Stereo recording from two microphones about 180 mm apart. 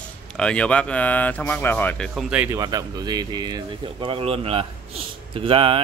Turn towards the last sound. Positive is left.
turn(degrees=-30)  # may be behind; listen again after turning